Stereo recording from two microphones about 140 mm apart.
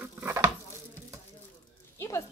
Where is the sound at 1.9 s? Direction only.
20° left (ahead or behind).